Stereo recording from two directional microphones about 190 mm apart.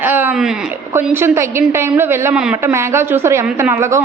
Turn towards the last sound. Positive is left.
turn(degrees=-15)  # may be behind; listen again after turning